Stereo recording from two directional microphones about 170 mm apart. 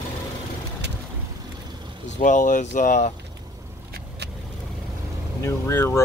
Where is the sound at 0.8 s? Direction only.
90° right.